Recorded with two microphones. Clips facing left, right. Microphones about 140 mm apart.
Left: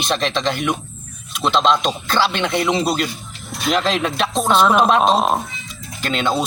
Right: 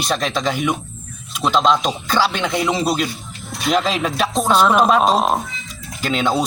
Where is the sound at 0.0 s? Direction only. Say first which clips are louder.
Even; 5° right (ahead or behind).